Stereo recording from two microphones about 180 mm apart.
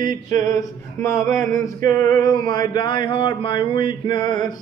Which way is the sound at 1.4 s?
50° right (ahead or behind).